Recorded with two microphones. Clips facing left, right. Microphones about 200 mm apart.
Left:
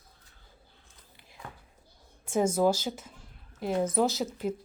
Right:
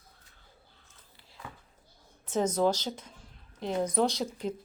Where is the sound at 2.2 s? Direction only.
10° left (ahead or behind).